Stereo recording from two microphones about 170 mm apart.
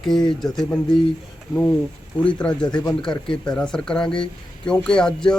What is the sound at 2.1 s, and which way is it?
Speech, 5° left (ahead or behind).